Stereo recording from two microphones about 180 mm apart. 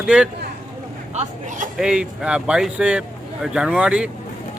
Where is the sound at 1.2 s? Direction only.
45° right (ahead or behind).